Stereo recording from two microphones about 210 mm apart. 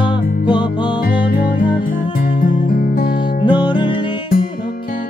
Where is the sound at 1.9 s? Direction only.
40° left (ahead or behind).